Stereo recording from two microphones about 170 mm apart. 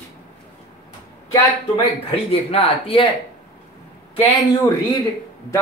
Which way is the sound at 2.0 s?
35° left (ahead or behind).